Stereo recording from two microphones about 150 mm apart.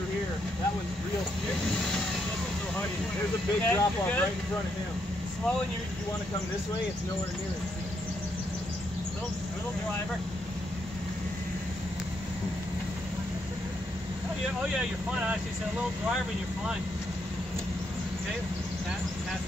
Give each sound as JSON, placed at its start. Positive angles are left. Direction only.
{"t": 3.6, "sound": "speech", "side_deg": 10}
{"t": 15.0, "sound": "speech", "side_deg": -10}